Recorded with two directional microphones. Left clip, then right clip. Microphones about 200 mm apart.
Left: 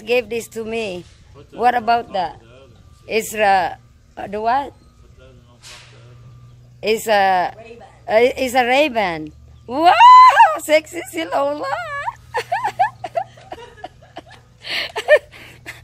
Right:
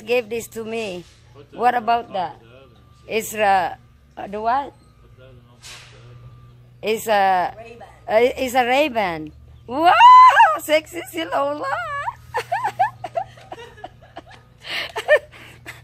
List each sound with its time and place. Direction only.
0.0 s a woman's voice: 15° left (ahead or behind)
3.1 s speech: 15° left (ahead or behind)
6.8 s a woman's voice: 15° left (ahead or behind)
8.0 s a sound: 15° left (ahead or behind)
13.5 s chuckle: 20° left (ahead or behind)
14.6 s a sound: 15° left (ahead or behind)